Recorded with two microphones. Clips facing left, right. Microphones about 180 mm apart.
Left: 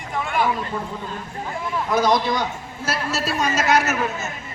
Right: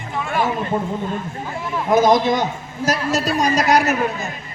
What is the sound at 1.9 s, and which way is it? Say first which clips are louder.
A man's voice: right 5 dB; 45° right (ahead or behind).